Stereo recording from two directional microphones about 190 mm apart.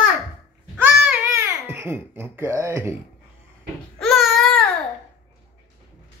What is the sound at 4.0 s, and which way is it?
Baby cry, centre (ahead or behind).